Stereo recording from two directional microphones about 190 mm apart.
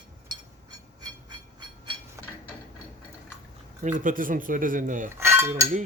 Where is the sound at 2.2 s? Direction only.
15° right (ahead or behind).